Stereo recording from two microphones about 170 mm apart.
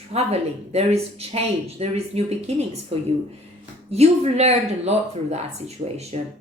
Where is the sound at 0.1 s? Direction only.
40° right (ahead or behind).